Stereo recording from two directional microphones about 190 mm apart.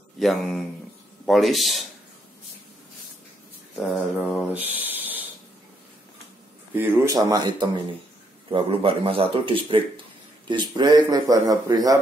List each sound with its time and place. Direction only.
0.2 s a man's voice: centre (ahead or behind)
4.2 s speech: centre (ahead or behind)
6.7 s speech: 10° right (ahead or behind)